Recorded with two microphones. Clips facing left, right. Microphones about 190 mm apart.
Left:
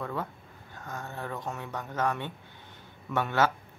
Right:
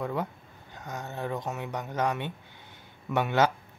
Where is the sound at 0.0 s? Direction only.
15° right (ahead or behind).